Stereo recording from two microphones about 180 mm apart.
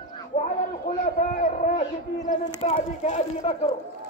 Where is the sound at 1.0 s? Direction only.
45° left (ahead or behind).